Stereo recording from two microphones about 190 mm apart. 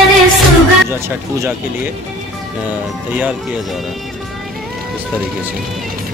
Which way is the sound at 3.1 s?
5° right (ahead or behind).